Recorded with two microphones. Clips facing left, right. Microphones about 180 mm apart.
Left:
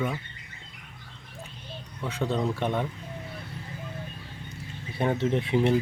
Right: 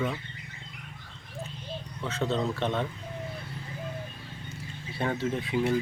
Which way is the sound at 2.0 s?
10° left (ahead or behind).